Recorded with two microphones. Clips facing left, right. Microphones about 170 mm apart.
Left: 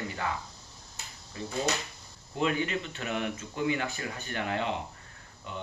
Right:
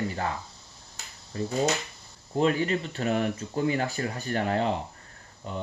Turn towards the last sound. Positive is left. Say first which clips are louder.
# right 5 dB
turn(degrees=-40)  # may be behind; listen again after turning